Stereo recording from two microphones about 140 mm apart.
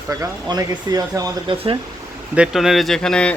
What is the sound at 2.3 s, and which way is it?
Speech, centre (ahead or behind).